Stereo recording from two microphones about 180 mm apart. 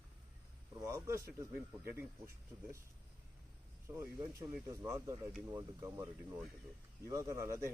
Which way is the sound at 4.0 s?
15° right (ahead or behind).